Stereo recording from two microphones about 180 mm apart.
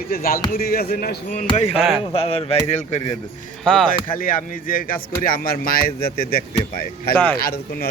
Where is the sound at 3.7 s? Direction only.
5° left (ahead or behind).